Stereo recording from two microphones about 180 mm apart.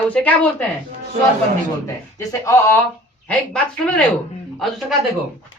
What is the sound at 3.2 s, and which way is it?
Speech, 5° left (ahead or behind).